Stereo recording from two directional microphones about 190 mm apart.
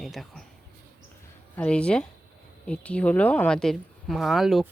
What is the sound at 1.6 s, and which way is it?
Speech, 5° left (ahead or behind).